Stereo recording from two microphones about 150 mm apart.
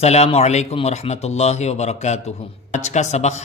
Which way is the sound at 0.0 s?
45° left (ahead or behind).